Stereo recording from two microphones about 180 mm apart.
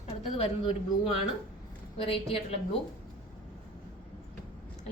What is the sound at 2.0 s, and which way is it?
Speech, 30° left (ahead or behind).